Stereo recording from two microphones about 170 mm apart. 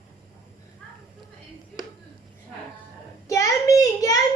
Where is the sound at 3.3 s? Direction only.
20° left (ahead or behind).